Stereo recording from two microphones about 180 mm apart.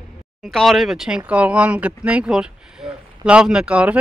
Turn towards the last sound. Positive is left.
turn(degrees=-5)  # may be behind; listen again after turning